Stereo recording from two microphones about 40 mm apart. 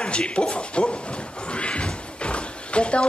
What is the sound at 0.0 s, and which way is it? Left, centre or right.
Speech, left.